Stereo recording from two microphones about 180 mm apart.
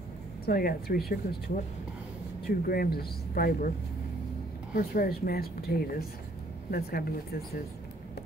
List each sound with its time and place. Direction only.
0.5 s speech: 55° left (ahead or behind)
2.4 s speech: 55° left (ahead or behind)
4.7 s speech: 55° left (ahead or behind)